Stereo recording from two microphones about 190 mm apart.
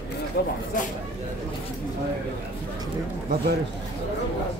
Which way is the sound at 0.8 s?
45° left (ahead or behind).